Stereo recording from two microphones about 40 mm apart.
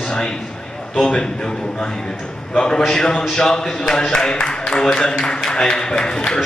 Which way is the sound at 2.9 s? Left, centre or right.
Centre.